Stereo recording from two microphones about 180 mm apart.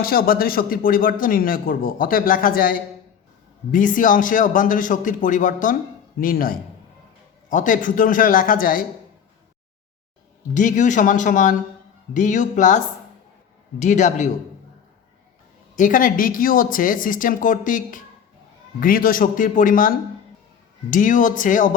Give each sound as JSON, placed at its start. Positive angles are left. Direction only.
{"t": 0.0, "sound": "a man's voice", "side_deg": 55}
{"t": 10.5, "sound": "a man's voice", "side_deg": 45}
{"t": 15.7, "sound": "a man's voice", "side_deg": 45}
{"t": 20.9, "sound": "a man's voice", "side_deg": 45}